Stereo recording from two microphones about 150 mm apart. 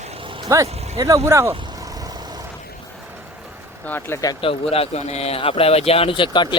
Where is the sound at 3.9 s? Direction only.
15° left (ahead or behind).